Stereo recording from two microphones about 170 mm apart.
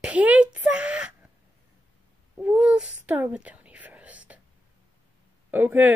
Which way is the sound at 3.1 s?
10° right (ahead or behind).